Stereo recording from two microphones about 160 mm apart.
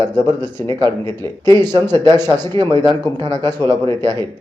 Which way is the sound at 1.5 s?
25° right (ahead or behind).